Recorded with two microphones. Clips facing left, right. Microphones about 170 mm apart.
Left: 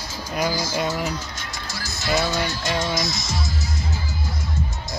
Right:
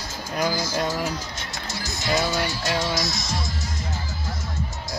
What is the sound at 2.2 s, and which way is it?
Speech, 10° right (ahead or behind).